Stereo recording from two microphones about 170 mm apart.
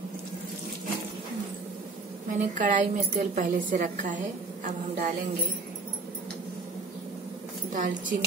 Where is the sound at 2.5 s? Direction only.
50° right (ahead or behind).